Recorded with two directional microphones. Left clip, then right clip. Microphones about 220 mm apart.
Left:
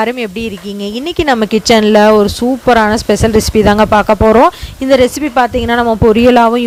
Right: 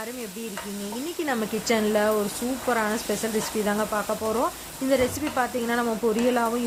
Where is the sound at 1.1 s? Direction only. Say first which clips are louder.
Left 17 dB; 45° left (ahead or behind).